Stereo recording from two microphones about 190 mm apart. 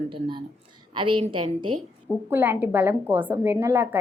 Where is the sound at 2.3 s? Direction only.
10° right (ahead or behind).